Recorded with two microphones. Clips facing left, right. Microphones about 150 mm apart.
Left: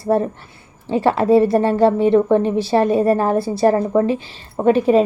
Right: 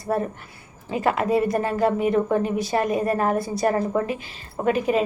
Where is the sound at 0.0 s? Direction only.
30° left (ahead or behind).